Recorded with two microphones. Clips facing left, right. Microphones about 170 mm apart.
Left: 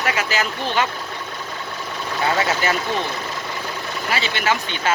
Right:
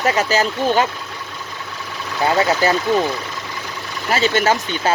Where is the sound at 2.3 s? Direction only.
35° right (ahead or behind).